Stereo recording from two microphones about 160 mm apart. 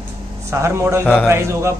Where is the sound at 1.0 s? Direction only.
10° left (ahead or behind).